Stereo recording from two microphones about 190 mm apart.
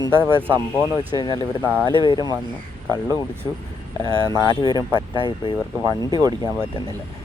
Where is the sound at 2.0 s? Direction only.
20° left (ahead or behind).